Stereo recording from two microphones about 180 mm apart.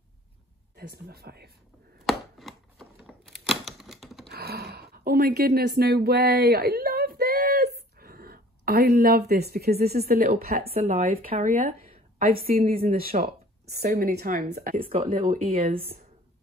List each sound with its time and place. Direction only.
0.7 s a woman's voice: 60° right (ahead or behind)
2.0 s chopping: centre (ahead or behind)
4.3 s a sound: 60° right (ahead or behind)
10.7 s a woman's voice: 45° right (ahead or behind)
15.3 s speech: 40° right (ahead or behind)